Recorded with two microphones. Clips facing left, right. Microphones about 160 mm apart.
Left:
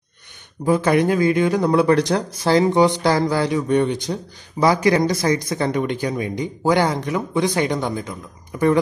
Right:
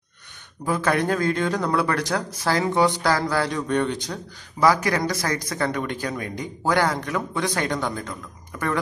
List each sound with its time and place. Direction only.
0.7 s speech: 20° left (ahead or behind)